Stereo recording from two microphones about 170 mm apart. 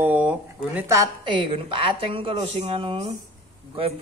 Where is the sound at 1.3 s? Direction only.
30° right (ahead or behind).